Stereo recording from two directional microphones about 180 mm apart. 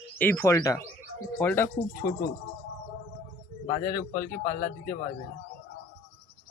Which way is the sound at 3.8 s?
55° left (ahead or behind).